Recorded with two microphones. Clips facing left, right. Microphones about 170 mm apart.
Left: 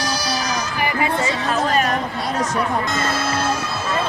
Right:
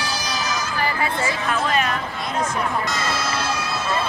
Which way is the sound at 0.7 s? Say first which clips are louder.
Left 3 dB; 15° left (ahead or behind).